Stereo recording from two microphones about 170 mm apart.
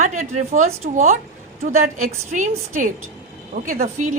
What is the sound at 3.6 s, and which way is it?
Speech, 60° right (ahead or behind).